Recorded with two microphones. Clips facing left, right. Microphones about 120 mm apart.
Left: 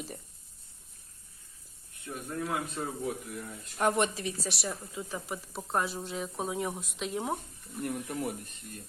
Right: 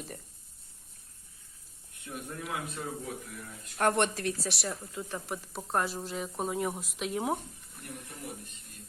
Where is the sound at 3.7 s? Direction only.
Centre (ahead or behind).